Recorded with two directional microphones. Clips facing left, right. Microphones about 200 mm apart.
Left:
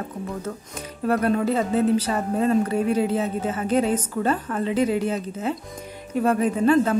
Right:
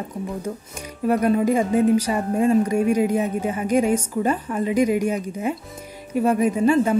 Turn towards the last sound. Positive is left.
turn(degrees=-10)  # may be behind; listen again after turning